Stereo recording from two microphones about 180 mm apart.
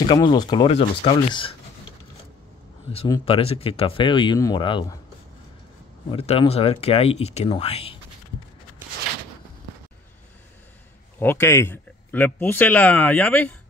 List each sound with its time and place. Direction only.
0.0 s speech: 25° left (ahead or behind)
3.3 s speech: 30° left (ahead or behind)
6.0 s speech: 30° left (ahead or behind)
11.1 s speech: 10° left (ahead or behind)